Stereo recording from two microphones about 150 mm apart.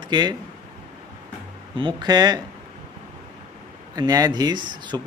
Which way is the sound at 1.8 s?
30° right (ahead or behind).